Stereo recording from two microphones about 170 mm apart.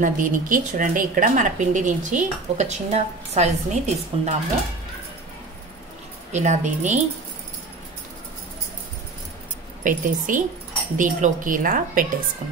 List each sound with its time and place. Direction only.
0.0 s a woman's voice: 50° right (ahead or behind)
6.3 s a woman's voice: 45° right (ahead or behind)
9.8 s a woman's voice: 50° right (ahead or behind)